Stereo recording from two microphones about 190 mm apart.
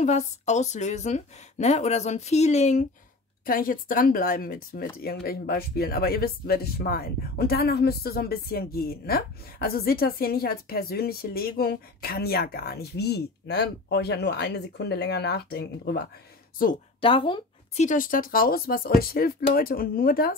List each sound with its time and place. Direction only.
0.0 s a woman's voice: 35° left (ahead or behind)
3.4 s speech: 50° left (ahead or behind)
17.0 s speech: 25° left (ahead or behind)
17.8 s speech: 45° left (ahead or behind)